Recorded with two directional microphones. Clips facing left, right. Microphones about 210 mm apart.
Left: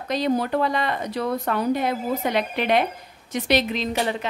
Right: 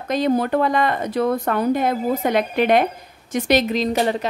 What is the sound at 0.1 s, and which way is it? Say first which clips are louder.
A woman's voice: right 4 dB; 50° right (ahead or behind).